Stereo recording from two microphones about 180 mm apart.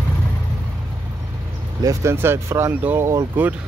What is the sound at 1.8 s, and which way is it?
Speech, 20° right (ahead or behind).